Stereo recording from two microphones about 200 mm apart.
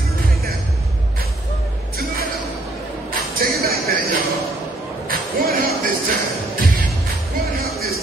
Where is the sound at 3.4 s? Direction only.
50° right (ahead or behind).